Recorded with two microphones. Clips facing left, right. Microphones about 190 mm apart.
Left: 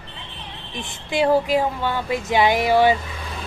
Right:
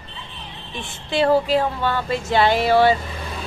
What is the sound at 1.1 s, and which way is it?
Speech, 15° left (ahead or behind).